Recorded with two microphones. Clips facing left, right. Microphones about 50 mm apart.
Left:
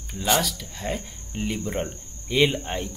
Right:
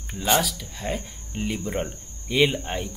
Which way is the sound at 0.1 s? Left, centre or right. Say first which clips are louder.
Right 1 dB; centre.